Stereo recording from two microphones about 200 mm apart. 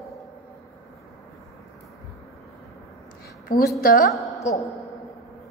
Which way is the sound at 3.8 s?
45° left (ahead or behind).